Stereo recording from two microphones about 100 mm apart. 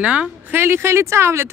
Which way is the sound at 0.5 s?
25° right (ahead or behind).